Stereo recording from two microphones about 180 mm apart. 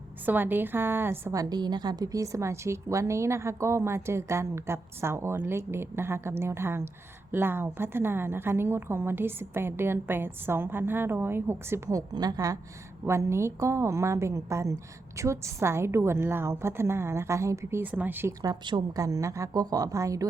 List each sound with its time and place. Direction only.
0.3 s a woman's voice: 10° right (ahead or behind)